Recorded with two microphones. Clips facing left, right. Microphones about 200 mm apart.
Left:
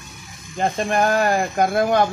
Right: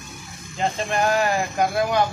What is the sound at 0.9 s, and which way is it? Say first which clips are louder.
Speech: left 2 dB; 50° left (ahead or behind).